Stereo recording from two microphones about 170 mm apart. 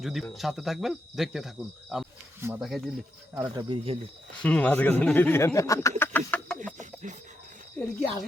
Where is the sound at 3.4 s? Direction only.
30° right (ahead or behind).